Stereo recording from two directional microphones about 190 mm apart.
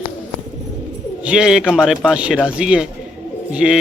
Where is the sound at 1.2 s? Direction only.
5° right (ahead or behind).